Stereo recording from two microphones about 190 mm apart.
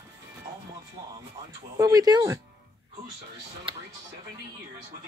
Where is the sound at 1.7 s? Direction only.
20° right (ahead or behind).